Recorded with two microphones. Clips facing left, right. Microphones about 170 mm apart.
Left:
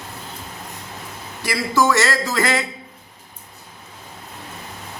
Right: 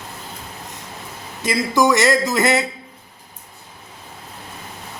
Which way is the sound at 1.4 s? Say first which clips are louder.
Right 2 dB; 15° right (ahead or behind).